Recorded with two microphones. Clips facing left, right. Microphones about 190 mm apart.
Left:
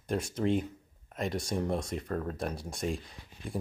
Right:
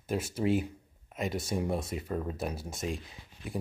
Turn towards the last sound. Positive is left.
turn(degrees=0)  # may be behind; listen again after turning